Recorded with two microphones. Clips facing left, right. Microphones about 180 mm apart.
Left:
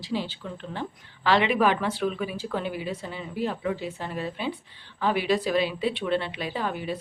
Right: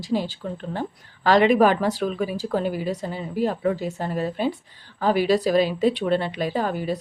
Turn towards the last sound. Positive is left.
turn(degrees=-40)  # may be behind; listen again after turning